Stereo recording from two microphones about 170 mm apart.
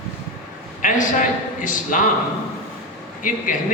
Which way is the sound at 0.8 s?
50° left (ahead or behind).